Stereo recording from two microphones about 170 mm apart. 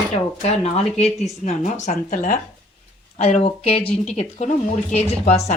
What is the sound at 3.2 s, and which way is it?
A woman's voice, 35° left (ahead or behind).